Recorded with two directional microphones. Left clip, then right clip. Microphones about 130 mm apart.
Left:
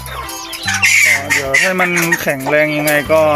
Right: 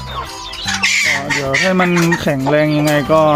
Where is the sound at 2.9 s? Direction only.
15° right (ahead or behind).